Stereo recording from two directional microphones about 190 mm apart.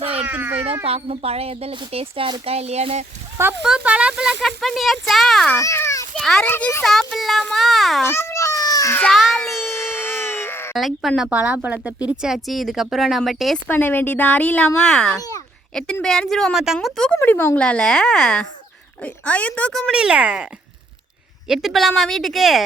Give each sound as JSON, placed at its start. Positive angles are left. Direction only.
{"t": 0.2, "sound": "baby cry", "side_deg": -10}
{"t": 0.9, "sound": "speech", "side_deg": -30}
{"t": 3.6, "sound": "speech", "side_deg": -5}
{"t": 5.5, "sound": "children playing", "side_deg": 15}
{"t": 6.1, "sound": "speech", "side_deg": 5}
{"t": 6.8, "sound": "speech", "side_deg": 0}
{"t": 8.0, "sound": "a sound", "side_deg": 15}
{"t": 10.8, "sound": "a woman's voice", "side_deg": 0}
{"t": 13.7, "sound": "speech", "side_deg": 10}